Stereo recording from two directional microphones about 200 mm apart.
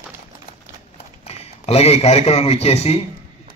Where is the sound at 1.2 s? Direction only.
30° left (ahead or behind).